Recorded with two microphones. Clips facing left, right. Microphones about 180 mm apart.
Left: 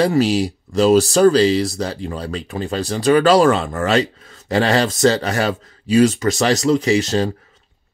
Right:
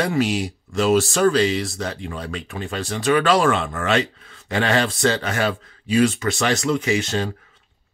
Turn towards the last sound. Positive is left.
turn(degrees=35)  # may be behind; listen again after turning